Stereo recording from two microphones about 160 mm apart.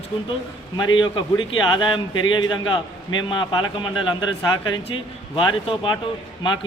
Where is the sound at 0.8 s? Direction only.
30° left (ahead or behind).